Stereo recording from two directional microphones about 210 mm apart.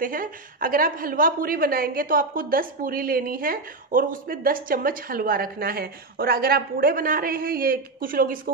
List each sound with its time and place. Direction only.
0.0 s a woman's voice: 40° right (ahead or behind)